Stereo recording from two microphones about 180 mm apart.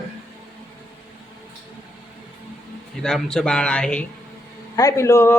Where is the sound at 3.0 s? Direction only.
5° left (ahead or behind).